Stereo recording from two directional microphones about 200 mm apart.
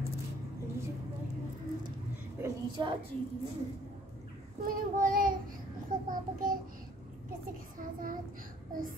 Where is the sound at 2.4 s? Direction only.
20° right (ahead or behind).